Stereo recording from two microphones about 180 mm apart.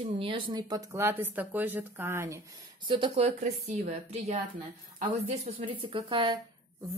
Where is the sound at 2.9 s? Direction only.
30° right (ahead or behind).